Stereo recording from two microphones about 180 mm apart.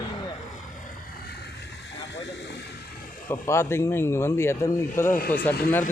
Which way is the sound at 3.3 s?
15° left (ahead or behind).